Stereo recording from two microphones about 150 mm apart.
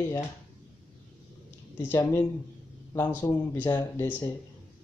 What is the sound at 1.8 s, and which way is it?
Speech, 15° left (ahead or behind).